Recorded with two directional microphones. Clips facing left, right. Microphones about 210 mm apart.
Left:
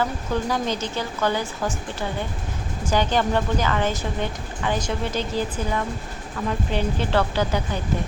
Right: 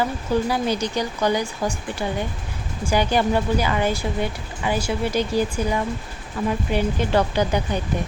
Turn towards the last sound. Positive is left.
turn(degrees=-15)  # may be behind; listen again after turning